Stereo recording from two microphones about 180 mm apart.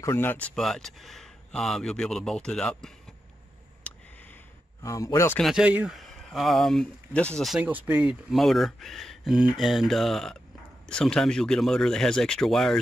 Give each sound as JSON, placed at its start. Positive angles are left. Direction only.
{"t": 0.0, "sound": "speech", "side_deg": 10}
{"t": 4.8, "sound": "speech", "side_deg": 15}
{"t": 5.4, "sound": "speech", "side_deg": -5}